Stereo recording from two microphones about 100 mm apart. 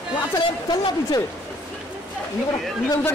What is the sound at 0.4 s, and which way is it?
Speech, 45° left (ahead or behind).